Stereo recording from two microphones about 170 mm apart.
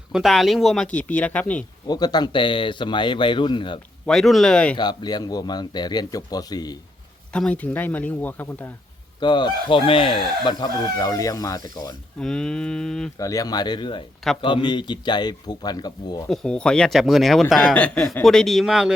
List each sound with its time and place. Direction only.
0.1 s speech: centre (ahead or behind)
1.9 s speech: 25° left (ahead or behind)
4.0 s speech: centre (ahead or behind)
4.8 s speech: 25° left (ahead or behind)
7.3 s speech: 5° left (ahead or behind)
9.2 s speech: 25° left (ahead or behind)
12.2 s speech: 5° left (ahead or behind)
13.1 s speech: 20° left (ahead or behind)
16.3 s speech: 5° left (ahead or behind)